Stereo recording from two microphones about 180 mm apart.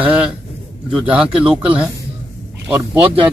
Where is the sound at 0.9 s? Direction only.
5° right (ahead or behind).